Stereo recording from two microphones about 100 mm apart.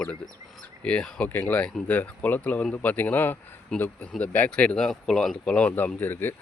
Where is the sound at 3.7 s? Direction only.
10° left (ahead or behind).